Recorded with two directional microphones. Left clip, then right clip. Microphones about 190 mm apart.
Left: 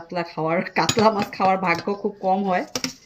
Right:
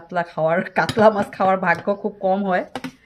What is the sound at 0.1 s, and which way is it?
Speech, 60° right (ahead or behind).